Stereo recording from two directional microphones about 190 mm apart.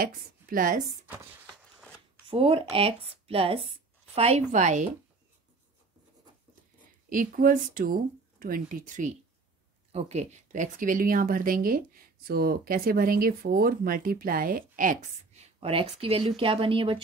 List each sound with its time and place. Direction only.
0.0 s speech: 45° right (ahead or behind)
1.3 s a sound: 5° right (ahead or behind)
2.2 s a woman's voice: 30° right (ahead or behind)
7.1 s speech: 45° right (ahead or behind); by 17.0 s 30° right (ahead or behind)